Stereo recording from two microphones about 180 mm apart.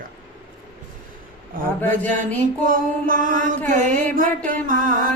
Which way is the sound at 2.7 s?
50° right (ahead or behind).